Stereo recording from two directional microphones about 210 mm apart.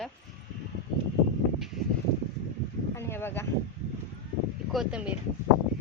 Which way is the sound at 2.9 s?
10° left (ahead or behind).